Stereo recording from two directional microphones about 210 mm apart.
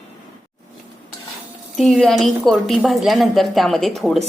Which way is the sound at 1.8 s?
Centre (ahead or behind).